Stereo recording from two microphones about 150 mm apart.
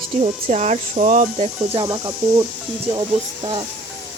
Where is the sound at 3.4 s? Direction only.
35° right (ahead or behind).